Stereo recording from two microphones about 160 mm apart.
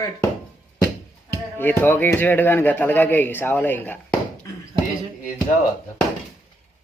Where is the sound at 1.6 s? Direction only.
10° left (ahead or behind).